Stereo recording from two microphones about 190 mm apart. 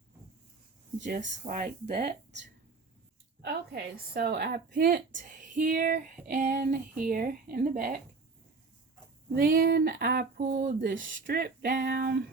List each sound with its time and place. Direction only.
1.0 s a woman's voice: 45° right (ahead or behind)
9.3 s a woman's voice: 50° right (ahead or behind)
11.3 s a sound: 60° right (ahead or behind)